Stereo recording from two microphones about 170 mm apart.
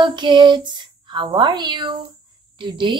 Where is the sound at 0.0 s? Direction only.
30° right (ahead or behind).